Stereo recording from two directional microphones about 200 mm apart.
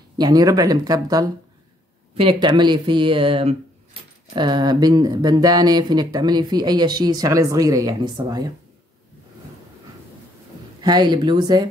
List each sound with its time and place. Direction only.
0.2 s speech: 20° right (ahead or behind)
10.8 s speech: 20° right (ahead or behind)